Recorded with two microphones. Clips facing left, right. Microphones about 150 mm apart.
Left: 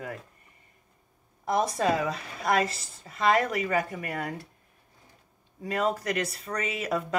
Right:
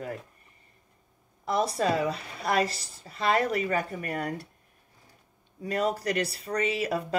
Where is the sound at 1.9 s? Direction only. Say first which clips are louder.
Right 1 dB; 30° right (ahead or behind).